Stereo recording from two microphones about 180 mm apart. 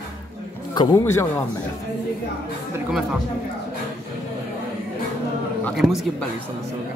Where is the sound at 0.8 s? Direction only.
15° left (ahead or behind).